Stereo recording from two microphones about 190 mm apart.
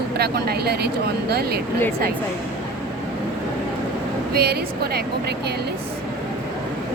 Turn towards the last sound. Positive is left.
turn(degrees=-55)  # may be behind; listen again after turning